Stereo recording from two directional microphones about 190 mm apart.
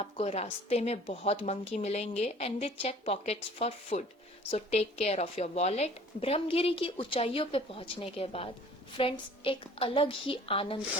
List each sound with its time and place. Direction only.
0.0 s a woman's voice: 30° left (ahead or behind)